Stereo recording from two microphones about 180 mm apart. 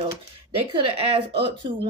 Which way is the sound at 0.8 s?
30° right (ahead or behind).